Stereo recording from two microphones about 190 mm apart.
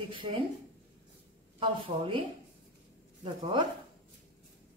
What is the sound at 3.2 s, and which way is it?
Speech, 25° right (ahead or behind).